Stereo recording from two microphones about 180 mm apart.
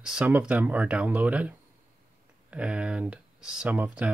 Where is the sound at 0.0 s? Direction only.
5° right (ahead or behind).